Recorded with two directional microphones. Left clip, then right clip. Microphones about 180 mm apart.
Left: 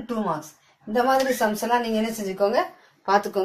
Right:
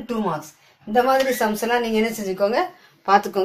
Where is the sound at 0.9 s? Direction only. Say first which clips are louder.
Right 3 dB; 25° right (ahead or behind).